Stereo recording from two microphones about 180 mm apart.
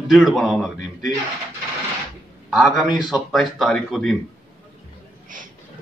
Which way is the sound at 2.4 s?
Centre (ahead or behind).